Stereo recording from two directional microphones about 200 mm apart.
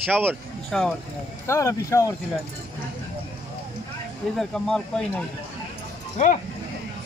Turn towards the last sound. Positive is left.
turn(degrees=40)  # may be behind; listen again after turning